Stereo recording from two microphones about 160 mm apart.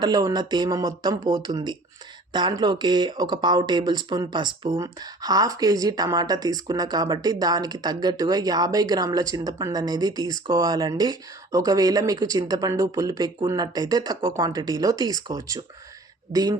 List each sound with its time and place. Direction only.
0.0 s a woman's voice: 25° right (ahead or behind)